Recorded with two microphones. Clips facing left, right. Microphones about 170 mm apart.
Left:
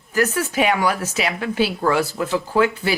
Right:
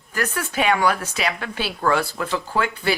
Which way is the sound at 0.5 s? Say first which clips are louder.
Right 1 dB; 10° left (ahead or behind).